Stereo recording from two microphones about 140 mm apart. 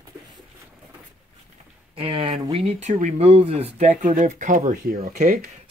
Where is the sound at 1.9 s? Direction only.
40° right (ahead or behind); by 5.5 s 80° right.